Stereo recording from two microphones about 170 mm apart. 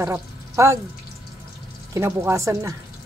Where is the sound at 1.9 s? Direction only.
15° right (ahead or behind).